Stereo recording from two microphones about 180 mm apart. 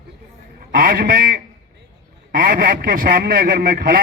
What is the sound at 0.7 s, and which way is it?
A man's voice, 55° right (ahead or behind).